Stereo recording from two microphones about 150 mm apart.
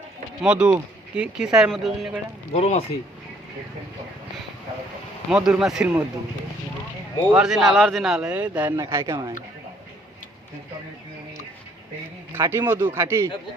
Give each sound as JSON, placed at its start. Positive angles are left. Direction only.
{"t": 0.4, "sound": "a man's voice", "side_deg": -5}
{"t": 2.5, "sound": "speech", "side_deg": 45}
{"t": 5.3, "sound": "speech", "side_deg": -5}
{"t": 7.3, "sound": "a man's voice", "side_deg": 0}
{"t": 12.4, "sound": "a man's voice", "side_deg": -15}